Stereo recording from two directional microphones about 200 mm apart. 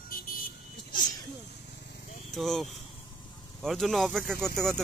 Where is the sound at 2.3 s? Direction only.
Centre (ahead or behind).